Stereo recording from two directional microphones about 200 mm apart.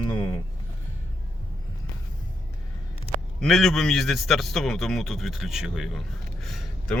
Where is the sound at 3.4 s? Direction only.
Centre (ahead or behind).